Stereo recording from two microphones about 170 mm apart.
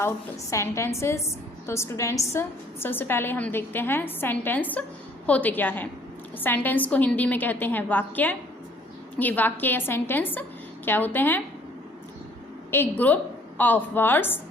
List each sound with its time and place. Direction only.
0.5 s a woman's voice: 15° left (ahead or behind)
12.7 s a woman's voice: 10° left (ahead or behind)